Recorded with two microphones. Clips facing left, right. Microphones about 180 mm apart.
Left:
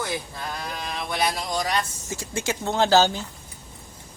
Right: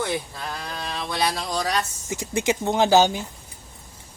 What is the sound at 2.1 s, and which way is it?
Speech, 15° right (ahead or behind).